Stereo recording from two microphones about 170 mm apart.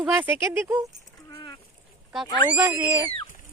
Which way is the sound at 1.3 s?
20° left (ahead or behind).